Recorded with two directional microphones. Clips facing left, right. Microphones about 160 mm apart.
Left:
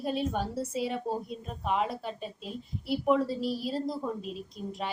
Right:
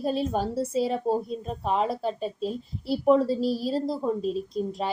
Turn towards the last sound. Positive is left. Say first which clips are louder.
# right 8 dB
turn(degrees=-35)  # may be behind; listen again after turning